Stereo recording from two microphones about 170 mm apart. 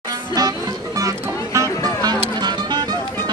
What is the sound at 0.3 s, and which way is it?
Music, 20° right (ahead or behind).